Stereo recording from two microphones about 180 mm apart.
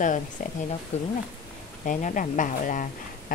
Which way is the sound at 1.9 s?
45° left (ahead or behind).